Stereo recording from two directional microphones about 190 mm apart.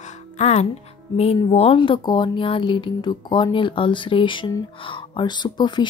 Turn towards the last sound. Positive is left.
turn(degrees=25)  # may be behind; listen again after turning